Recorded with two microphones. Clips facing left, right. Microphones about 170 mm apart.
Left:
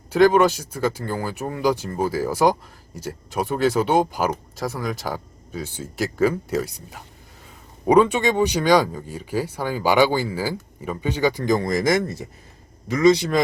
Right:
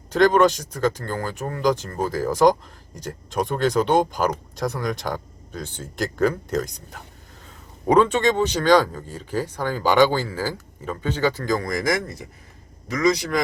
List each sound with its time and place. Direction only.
0.1 s a man's voice: 5° left (ahead or behind); by 13.4 s 25° left (ahead or behind)